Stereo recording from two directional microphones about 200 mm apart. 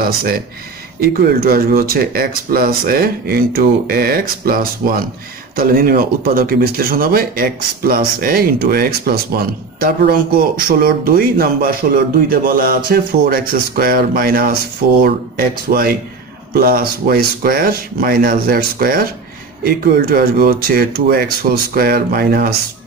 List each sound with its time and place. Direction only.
0.0 s speech: 50° right (ahead or behind)